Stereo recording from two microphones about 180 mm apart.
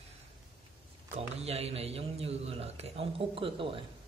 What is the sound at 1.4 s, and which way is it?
A man's voice, 35° right (ahead or behind).